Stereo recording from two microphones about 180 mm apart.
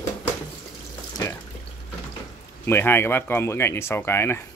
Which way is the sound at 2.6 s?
15° left (ahead or behind).